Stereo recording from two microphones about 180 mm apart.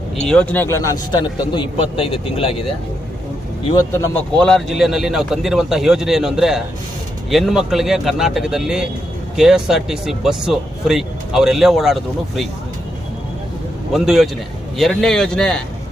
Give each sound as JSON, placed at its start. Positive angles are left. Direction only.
{"t": 0.2, "sound": "a man's voice", "side_deg": 5}
{"t": 3.7, "sound": "a man's voice", "side_deg": 20}
{"t": 4.1, "sound": "speech", "side_deg": 5}
{"t": 13.9, "sound": "speech", "side_deg": 0}